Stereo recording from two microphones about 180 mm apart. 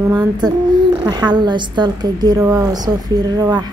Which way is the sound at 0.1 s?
20° right (ahead or behind).